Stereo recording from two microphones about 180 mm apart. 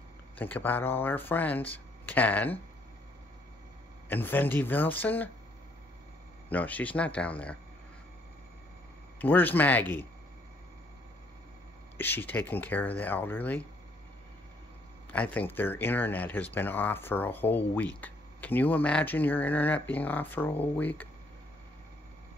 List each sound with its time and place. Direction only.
0.4 s speech: 10° left (ahead or behind)
4.1 s speech: 10° left (ahead or behind)
6.5 s speech: 10° left (ahead or behind)
9.2 s speech: 10° left (ahead or behind)
12.0 s speech: 10° left (ahead or behind)
15.1 s speech: 10° left (ahead or behind)